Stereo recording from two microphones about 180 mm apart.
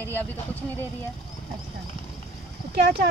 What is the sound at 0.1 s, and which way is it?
Speech, 10° left (ahead or behind).